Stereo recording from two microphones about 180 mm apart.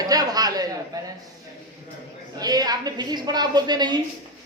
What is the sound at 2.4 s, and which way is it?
A woman's voice, 20° right (ahead or behind).